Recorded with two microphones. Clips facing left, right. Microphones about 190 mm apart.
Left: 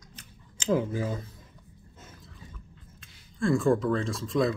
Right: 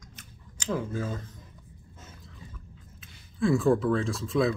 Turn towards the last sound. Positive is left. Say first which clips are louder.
# even
turn(degrees=0)  # may be behind; listen again after turning